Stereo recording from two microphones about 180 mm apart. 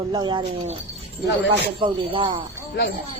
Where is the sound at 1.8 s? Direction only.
30° right (ahead or behind).